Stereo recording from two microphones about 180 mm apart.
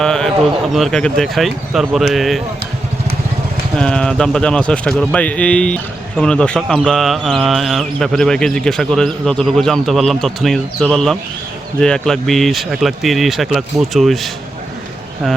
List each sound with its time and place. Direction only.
0.0 s speech: 5° left (ahead or behind)
3.8 s speech: 5° left (ahead or behind)